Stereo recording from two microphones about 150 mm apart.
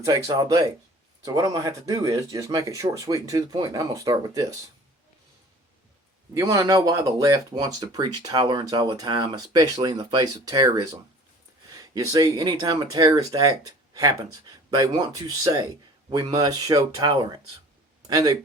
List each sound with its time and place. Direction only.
0.0 s speech: 25° right (ahead or behind)
6.3 s speech: 20° right (ahead or behind)